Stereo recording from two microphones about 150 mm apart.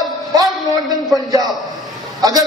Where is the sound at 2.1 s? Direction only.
25° right (ahead or behind).